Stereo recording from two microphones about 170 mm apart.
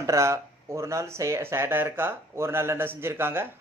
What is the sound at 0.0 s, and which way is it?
Speech, 15° right (ahead or behind).